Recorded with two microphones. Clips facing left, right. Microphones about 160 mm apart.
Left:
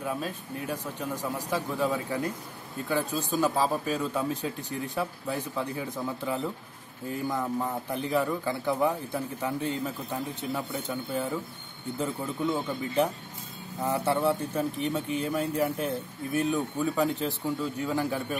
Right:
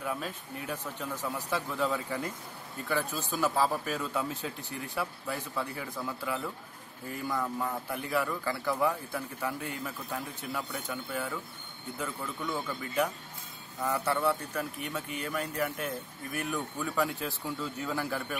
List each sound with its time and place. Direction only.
0.0 s speech: 15° left (ahead or behind); by 15.9 s 30° left (ahead or behind)
16.5 s speech: 20° left (ahead or behind)